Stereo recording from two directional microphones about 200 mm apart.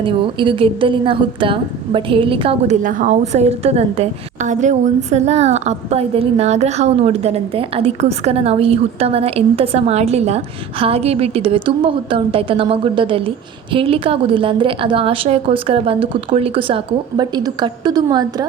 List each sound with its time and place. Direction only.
0.0 s a woman's voice: 25° right (ahead or behind)